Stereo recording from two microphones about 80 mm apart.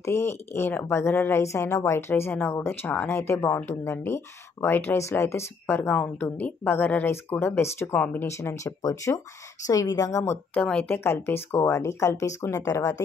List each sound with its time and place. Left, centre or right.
0.0 s speech: left
8.3 s speech: left
10.5 s speech: centre
11.1 s speech: left